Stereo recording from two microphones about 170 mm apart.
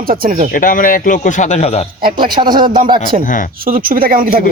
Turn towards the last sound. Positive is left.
turn(degrees=-60)  # may be behind; listen again after turning